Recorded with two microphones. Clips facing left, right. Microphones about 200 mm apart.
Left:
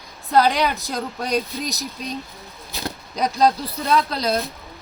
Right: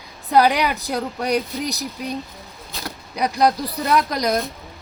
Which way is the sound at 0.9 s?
75° right (ahead or behind).